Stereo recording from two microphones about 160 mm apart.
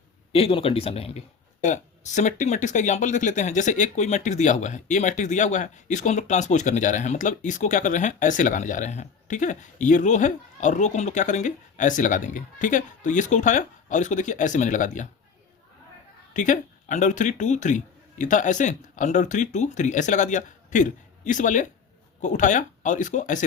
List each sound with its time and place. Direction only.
0.3 s speech: 35° left (ahead or behind); by 15.0 s 50° left (ahead or behind)
16.3 s speech: 55° left (ahead or behind)